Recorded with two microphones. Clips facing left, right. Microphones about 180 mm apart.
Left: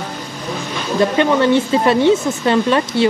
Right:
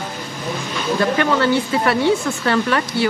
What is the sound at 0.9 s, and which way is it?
Speech, 20° left (ahead or behind).